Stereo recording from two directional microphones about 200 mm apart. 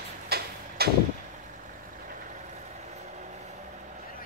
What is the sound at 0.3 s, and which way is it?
Tick-tock, 50° right (ahead or behind).